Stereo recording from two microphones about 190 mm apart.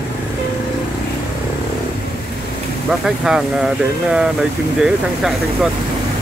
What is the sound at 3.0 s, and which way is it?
Speech, 5° right (ahead or behind).